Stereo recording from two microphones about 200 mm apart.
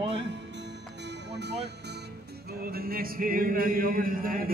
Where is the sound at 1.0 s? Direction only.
60° right (ahead or behind).